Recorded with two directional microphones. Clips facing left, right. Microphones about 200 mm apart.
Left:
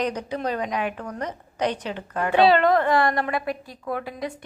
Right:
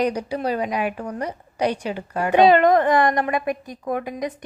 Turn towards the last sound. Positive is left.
turn(degrees=-20)  # may be behind; listen again after turning